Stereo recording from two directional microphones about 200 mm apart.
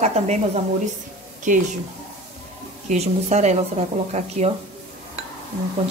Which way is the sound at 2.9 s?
35° right (ahead or behind).